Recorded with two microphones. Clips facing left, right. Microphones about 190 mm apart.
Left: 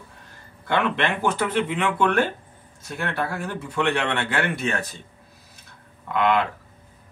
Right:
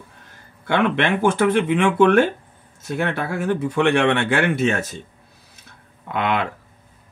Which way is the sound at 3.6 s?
70° right (ahead or behind).